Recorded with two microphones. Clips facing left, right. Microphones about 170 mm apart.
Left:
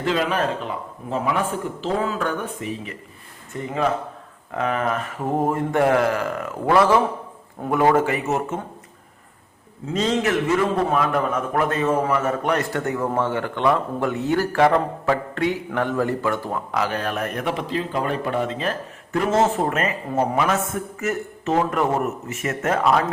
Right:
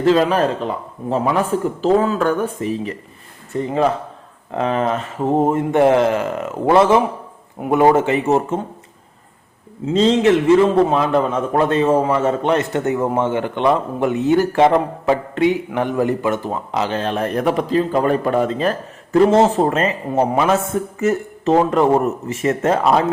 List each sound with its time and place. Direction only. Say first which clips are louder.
0.0 s a man's voice: right 7 dB; 35° right (ahead or behind)
9.8 s a man's voice: right 8 dB; 25° right (ahead or behind)